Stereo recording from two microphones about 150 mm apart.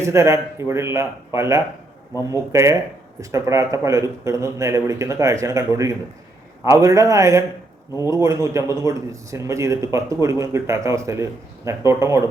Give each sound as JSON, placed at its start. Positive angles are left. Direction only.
{"t": 0.0, "sound": "speech", "side_deg": -20}